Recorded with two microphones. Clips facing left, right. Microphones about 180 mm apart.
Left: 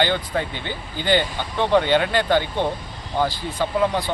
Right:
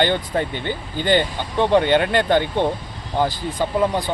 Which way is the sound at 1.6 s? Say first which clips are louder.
Right 2 dB; 15° right (ahead or behind).